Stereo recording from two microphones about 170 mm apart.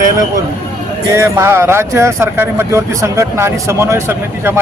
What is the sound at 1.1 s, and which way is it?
Speech, 15° right (ahead or behind).